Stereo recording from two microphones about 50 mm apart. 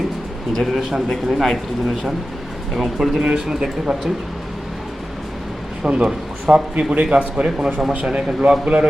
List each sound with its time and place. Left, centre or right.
0.5 s a man's voice: centre
2.7 s speech: centre
5.8 s a man's voice: centre